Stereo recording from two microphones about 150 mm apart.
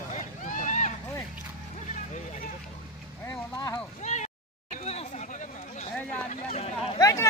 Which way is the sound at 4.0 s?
50° left (ahead or behind).